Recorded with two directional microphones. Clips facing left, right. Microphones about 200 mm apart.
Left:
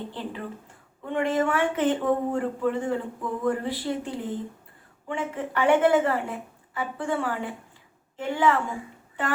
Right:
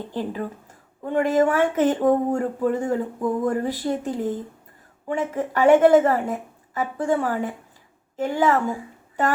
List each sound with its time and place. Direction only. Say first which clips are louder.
0.1 s a woman's voice: right 6 dB; 40° right (ahead or behind)